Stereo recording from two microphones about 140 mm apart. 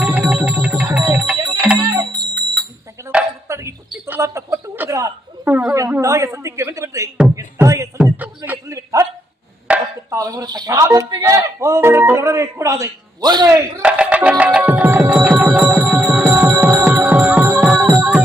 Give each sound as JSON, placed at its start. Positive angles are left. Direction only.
{"t": 0.0, "sound": "music", "side_deg": -10}
{"t": 3.0, "sound": "a sound", "side_deg": -20}
{"t": 7.3, "sound": "music", "side_deg": -20}
{"t": 8.0, "sound": "a sound", "side_deg": -15}
{"t": 9.6, "sound": "chopping", "side_deg": -10}
{"t": 10.2, "sound": "music", "side_deg": -25}
{"t": 13.5, "sound": "music", "side_deg": -10}